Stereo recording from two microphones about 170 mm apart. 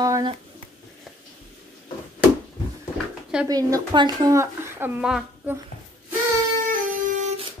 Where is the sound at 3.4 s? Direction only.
20° right (ahead or behind); by 5.6 s 5° right (ahead or behind).